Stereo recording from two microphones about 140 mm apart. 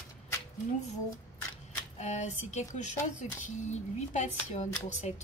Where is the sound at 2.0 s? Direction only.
55° left (ahead or behind).